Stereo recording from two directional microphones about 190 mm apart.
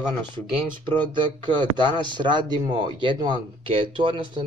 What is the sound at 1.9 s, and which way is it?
Speech, 25° right (ahead or behind).